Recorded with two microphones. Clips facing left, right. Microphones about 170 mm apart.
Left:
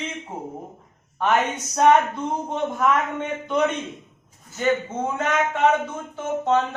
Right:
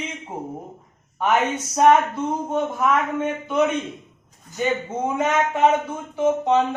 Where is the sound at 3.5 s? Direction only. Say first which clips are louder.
Right 1 dB; 5° right (ahead or behind).